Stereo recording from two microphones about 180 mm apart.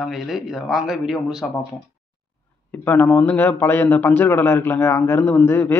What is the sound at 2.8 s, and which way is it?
A man's voice, 10° left (ahead or behind).